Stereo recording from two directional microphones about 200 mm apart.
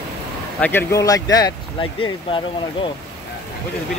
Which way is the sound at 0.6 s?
10° left (ahead or behind).